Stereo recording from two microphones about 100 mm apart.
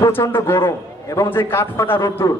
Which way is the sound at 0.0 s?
25° left (ahead or behind).